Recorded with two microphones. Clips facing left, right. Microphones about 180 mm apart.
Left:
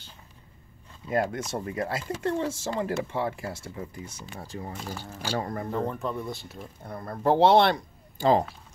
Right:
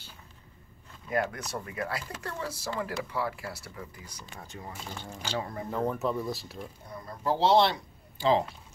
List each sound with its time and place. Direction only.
1.1 s speech: 25° left (ahead or behind)
4.9 s speech: 10° left (ahead or behind)
5.3 s speech: 55° left (ahead or behind)
5.7 s speech: 5° right (ahead or behind)
6.9 s speech: 60° left (ahead or behind)